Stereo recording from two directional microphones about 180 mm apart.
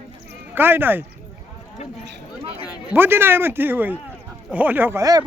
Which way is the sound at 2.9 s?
10° right (ahead or behind).